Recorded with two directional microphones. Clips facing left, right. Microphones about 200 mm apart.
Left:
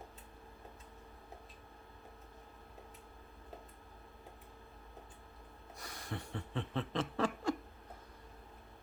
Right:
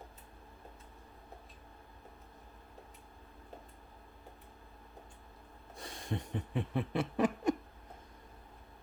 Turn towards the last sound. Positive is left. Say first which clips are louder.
# right 4 dB
turn(degrees=-15)  # may be behind; listen again after turning